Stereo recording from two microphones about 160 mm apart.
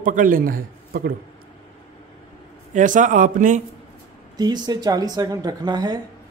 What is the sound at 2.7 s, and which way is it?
Speech, 55° right (ahead or behind).